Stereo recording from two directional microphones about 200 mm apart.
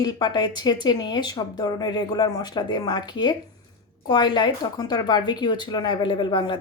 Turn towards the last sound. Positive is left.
turn(degrees=25)  # may be behind; listen again after turning